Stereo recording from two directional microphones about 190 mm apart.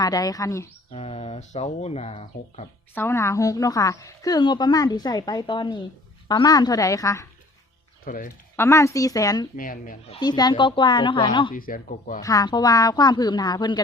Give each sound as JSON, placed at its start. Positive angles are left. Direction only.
{"t": 0.0, "sound": "a woman's voice", "side_deg": 20}
{"t": 0.9, "sound": "speech", "side_deg": 35}
{"t": 2.9, "sound": "a woman's voice", "side_deg": 10}
{"t": 8.0, "sound": "speech", "side_deg": 45}
{"t": 8.5, "sound": "a woman's voice", "side_deg": 15}
{"t": 9.6, "sound": "speech", "side_deg": 45}
{"t": 10.1, "sound": "a woman's voice", "side_deg": 20}
{"t": 11.5, "sound": "speech", "side_deg": 45}
{"t": 12.2, "sound": "a woman's voice", "side_deg": 20}